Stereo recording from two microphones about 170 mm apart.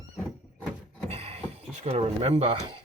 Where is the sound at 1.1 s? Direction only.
35° right (ahead or behind).